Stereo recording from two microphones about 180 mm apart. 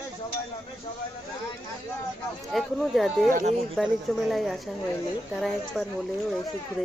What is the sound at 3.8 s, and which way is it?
Speech, centre (ahead or behind).